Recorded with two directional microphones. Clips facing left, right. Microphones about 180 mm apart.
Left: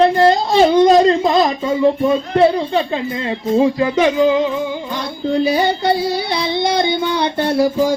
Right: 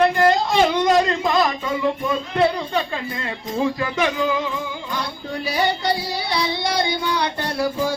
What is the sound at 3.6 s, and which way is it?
Child singing, 20° left (ahead or behind).